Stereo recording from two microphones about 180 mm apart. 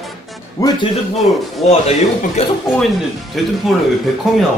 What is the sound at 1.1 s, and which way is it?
Speech, centre (ahead or behind).